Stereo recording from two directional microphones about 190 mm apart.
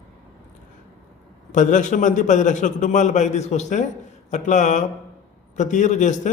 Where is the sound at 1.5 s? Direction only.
40° left (ahead or behind).